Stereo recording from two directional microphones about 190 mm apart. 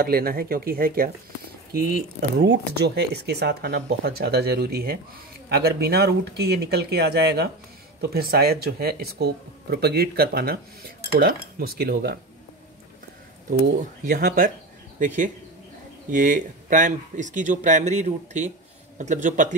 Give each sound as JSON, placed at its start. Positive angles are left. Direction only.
{"t": 0.0, "sound": "speech", "side_deg": -50}
{"t": 2.3, "sound": "speech", "side_deg": -65}
{"t": 14.0, "sound": "speech", "side_deg": -50}